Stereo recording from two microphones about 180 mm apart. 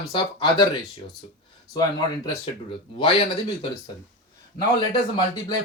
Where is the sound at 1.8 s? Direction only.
20° left (ahead or behind).